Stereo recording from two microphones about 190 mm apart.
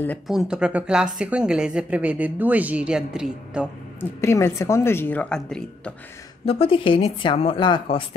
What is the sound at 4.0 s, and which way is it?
Speech, 15° left (ahead or behind).